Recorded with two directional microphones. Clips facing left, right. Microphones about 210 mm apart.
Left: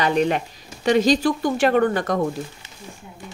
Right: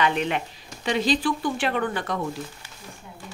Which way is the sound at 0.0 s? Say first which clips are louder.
Left 4 dB; 40° left (ahead or behind).